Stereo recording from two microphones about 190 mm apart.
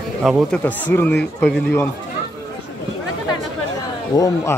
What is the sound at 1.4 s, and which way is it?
Speech, 10° left (ahead or behind).